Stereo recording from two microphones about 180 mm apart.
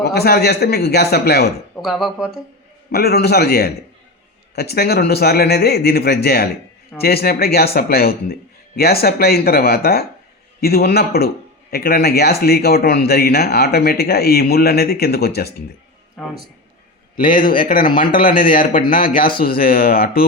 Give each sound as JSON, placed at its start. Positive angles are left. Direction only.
{"t": 0.0, "sound": "speech", "side_deg": 65}
{"t": 1.7, "sound": "speech", "side_deg": 0}
{"t": 2.9, "sound": "speech", "side_deg": 60}
{"t": 16.2, "sound": "speech", "side_deg": 0}
{"t": 17.2, "sound": "speech", "side_deg": 50}